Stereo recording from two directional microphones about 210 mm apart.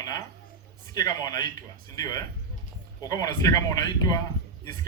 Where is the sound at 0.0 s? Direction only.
15° left (ahead or behind).